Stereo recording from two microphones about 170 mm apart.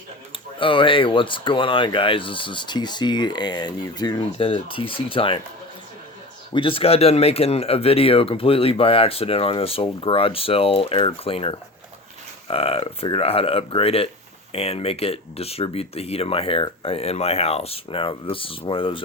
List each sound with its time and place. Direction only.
0.6 s speech: 30° left (ahead or behind)
6.5 s speech: 30° left (ahead or behind)